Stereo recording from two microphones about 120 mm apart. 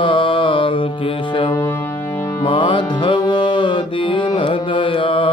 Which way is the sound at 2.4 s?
45° left (ahead or behind).